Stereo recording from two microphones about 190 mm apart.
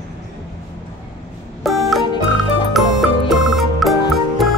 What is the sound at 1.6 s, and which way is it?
Music, centre (ahead or behind).